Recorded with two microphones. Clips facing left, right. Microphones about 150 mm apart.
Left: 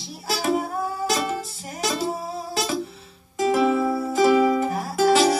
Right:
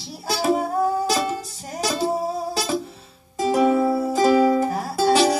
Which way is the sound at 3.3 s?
35° right (ahead or behind).